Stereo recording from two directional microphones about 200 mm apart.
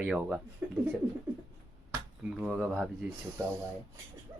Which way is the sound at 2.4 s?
5° right (ahead or behind).